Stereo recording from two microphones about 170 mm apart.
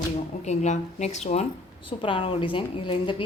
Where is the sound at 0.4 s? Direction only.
45° left (ahead or behind).